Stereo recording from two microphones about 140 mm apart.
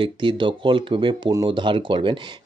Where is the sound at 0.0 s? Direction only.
35° right (ahead or behind).